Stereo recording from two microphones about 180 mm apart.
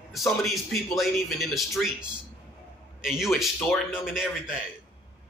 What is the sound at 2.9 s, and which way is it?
Speech, 5° right (ahead or behind).